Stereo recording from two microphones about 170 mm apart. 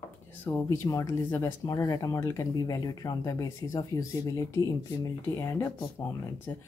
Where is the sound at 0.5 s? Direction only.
15° left (ahead or behind).